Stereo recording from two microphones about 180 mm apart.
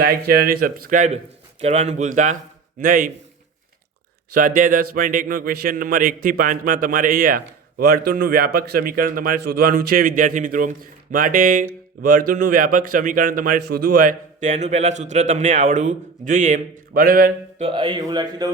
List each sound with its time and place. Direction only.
0.0 s a man's voice: 55° right (ahead or behind)
4.4 s a man's voice: 50° right (ahead or behind)
17.6 s speech: 30° right (ahead or behind)